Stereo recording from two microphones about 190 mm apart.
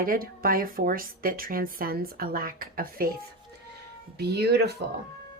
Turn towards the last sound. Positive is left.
turn(degrees=-60)  # may be behind; listen again after turning